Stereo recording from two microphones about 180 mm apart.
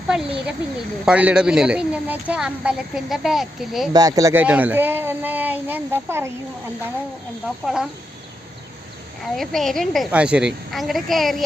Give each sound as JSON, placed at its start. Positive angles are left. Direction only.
{"t": 0.1, "sound": "speech", "side_deg": -5}
{"t": 3.9, "sound": "speech", "side_deg": -20}
{"t": 7.4, "sound": "speech", "side_deg": -5}
{"t": 9.3, "sound": "speech", "side_deg": 0}